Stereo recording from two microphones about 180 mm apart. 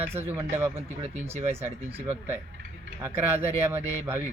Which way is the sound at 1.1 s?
40° right (ahead or behind).